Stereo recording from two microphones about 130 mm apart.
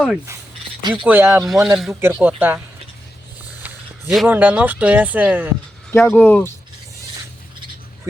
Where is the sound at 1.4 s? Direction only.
Centre (ahead or behind).